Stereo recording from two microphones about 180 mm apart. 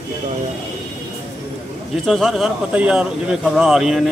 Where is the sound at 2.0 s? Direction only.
Centre (ahead or behind).